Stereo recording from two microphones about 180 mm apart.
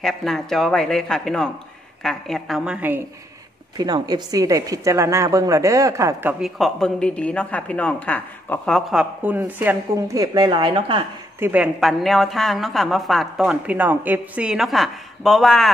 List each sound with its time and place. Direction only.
0.0 s a woman's voice: centre (ahead or behind)
3.7 s a woman's voice: 20° right (ahead or behind)
6.4 s a woman's voice: centre (ahead or behind)
9.2 s a woman's voice: 10° right (ahead or behind)
10.2 s a woman's voice: 20° right (ahead or behind)
11.3 s a woman's voice: 10° right (ahead or behind)